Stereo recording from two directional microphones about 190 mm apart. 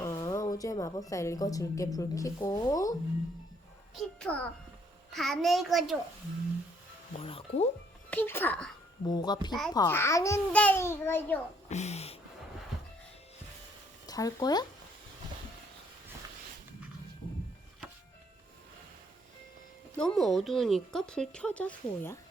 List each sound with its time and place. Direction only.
0.0 s a woman's voice: 15° left (ahead or behind)
3.9 s speech: 5° left (ahead or behind)
7.1 s speech: 30° left (ahead or behind)
8.1 s a child's voice: 10° left (ahead or behind)
9.0 s a child's voice: 20° left (ahead or behind)
11.7 s speech: 35° left (ahead or behind)
14.1 s speech: 20° left (ahead or behind)
20.0 s speech: 5° left (ahead or behind)